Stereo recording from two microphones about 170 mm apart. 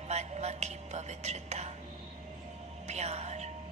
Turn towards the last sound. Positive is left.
turn(degrees=-40)  # may be behind; listen again after turning